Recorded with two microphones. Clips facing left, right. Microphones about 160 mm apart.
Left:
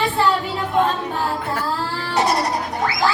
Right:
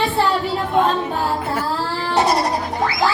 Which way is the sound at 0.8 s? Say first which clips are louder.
Right 1 dB; centre (ahead or behind).